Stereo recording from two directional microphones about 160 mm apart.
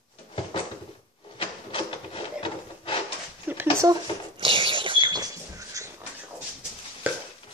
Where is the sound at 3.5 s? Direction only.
10° right (ahead or behind).